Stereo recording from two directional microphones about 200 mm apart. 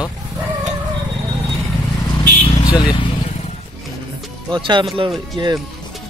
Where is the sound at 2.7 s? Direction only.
20° left (ahead or behind).